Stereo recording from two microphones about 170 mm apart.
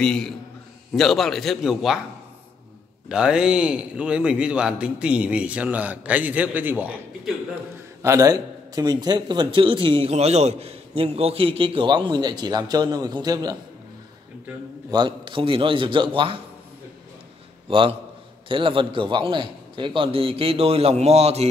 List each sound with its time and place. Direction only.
0.0 s a man's voice: 5° left (ahead or behind)
3.1 s a man's voice: 5° right (ahead or behind); by 13.6 s 25° right (ahead or behind)
14.9 s a man's voice: 25° right (ahead or behind)
17.6 s a man's voice: 30° right (ahead or behind)